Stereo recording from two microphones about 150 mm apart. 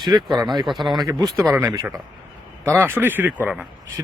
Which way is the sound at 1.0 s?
25° right (ahead or behind).